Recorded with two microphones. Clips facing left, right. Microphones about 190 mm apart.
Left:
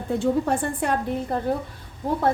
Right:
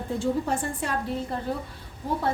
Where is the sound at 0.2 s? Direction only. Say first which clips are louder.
Left 4 dB; 60° left (ahead or behind).